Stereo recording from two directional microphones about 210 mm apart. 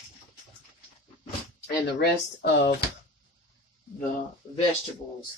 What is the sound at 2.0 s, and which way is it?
Speech, 50° left (ahead or behind).